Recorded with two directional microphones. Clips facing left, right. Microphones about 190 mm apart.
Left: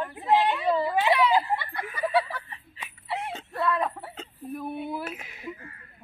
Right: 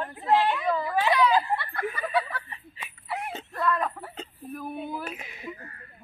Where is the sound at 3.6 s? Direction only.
25° left (ahead or behind).